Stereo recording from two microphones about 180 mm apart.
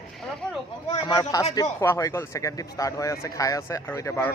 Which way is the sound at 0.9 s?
25° left (ahead or behind).